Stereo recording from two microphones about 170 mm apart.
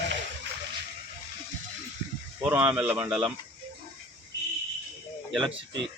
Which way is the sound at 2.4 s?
10° right (ahead or behind).